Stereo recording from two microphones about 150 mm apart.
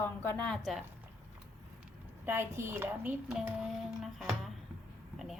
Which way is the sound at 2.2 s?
15° right (ahead or behind).